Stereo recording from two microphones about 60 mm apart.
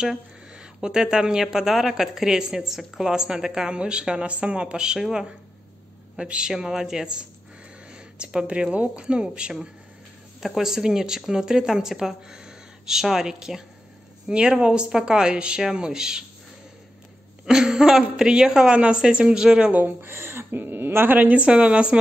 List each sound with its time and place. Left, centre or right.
0.0 s a woman's voice: centre
10.4 s speech: centre
17.5 s speech: centre
19.7 s speech: right; by 21.9 s centre